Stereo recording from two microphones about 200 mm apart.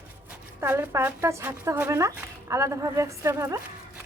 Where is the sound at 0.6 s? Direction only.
15° right (ahead or behind).